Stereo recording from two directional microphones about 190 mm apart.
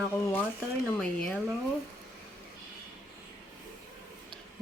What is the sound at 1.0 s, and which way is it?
Speech, 5° left (ahead or behind).